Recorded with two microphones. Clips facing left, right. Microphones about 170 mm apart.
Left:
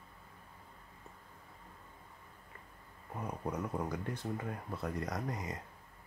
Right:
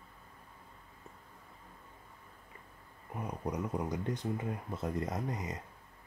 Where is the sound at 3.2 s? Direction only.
15° right (ahead or behind).